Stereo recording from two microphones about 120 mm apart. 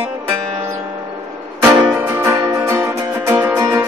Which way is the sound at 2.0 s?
15° right (ahead or behind).